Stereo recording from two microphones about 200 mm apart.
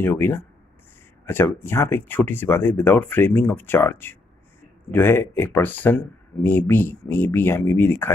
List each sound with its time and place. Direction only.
0.0 s speech: 10° left (ahead or behind)